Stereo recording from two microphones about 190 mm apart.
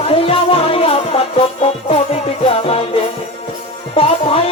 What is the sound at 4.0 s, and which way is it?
Music, 30° left (ahead or behind).